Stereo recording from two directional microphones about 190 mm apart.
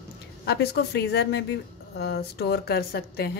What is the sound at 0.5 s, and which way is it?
Speech, 60° left (ahead or behind).